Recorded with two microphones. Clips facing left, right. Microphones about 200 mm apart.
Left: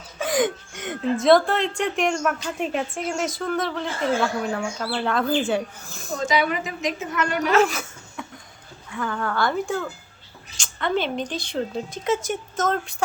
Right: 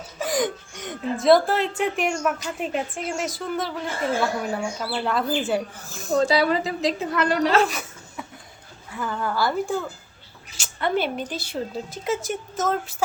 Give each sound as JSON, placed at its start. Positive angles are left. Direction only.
{"t": 0.2, "sound": "speech", "side_deg": 0}
{"t": 6.1, "sound": "a woman's voice", "side_deg": -35}
{"t": 7.7, "sound": "laughter", "side_deg": 0}
{"t": 9.0, "sound": "speech", "side_deg": -5}